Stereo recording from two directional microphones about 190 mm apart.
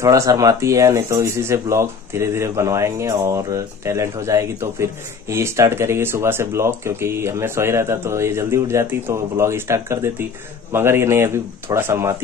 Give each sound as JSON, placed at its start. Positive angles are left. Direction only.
{"t": 0.0, "sound": "speech", "side_deg": -15}